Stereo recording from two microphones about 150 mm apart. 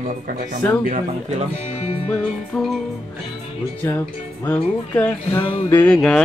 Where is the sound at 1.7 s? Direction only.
45° left (ahead or behind).